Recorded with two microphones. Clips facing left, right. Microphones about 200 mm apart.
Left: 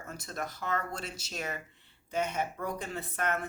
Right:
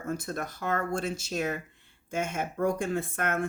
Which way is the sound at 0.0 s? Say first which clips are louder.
Right 6 dB; 50° right (ahead or behind).